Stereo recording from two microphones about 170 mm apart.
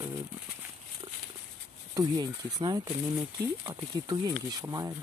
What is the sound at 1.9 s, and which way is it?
Speech, 20° right (ahead or behind).